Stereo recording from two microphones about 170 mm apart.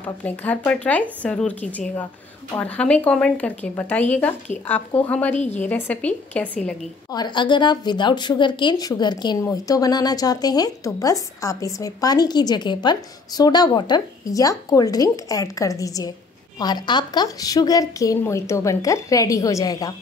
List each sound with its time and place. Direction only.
0.0 s speech: 10° left (ahead or behind)
5.3 s a woman's voice: 40° left (ahead or behind)
5.6 s speech: 10° left (ahead or behind)
7.1 s a woman's voice: 25° left (ahead or behind)